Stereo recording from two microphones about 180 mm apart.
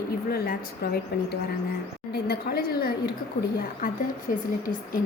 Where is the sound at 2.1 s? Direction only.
60° left (ahead or behind).